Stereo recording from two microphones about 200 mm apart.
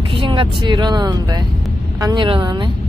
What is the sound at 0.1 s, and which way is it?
A woman's voice, 25° right (ahead or behind).